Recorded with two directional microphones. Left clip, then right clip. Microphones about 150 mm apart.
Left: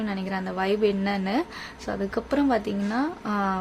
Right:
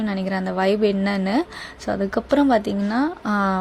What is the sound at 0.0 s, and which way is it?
A woman's voice, 30° right (ahead or behind).